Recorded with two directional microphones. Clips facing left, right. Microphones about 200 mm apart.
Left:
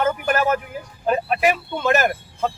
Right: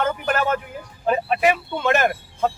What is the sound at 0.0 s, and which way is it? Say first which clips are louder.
Speech: left 2 dB; 5° left (ahead or behind).